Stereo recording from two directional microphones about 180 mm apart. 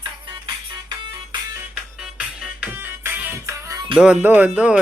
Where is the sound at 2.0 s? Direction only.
5° right (ahead or behind).